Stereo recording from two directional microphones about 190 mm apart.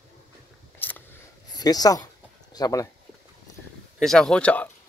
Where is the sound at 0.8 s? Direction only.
10° left (ahead or behind).